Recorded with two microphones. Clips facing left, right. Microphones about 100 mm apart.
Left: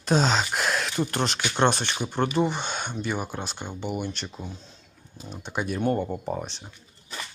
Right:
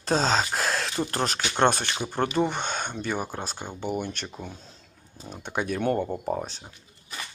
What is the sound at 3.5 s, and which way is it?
Speech, 10° right (ahead or behind).